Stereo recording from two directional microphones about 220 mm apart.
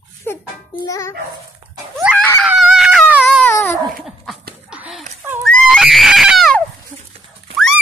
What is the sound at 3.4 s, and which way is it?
Baby cry, 10° left (ahead or behind).